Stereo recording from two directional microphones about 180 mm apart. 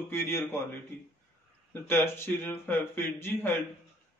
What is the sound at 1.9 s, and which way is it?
A man's voice, 15° left (ahead or behind).